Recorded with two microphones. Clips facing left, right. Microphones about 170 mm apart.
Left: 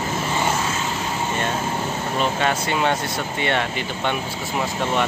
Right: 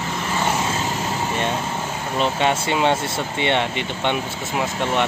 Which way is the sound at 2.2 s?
25° right (ahead or behind).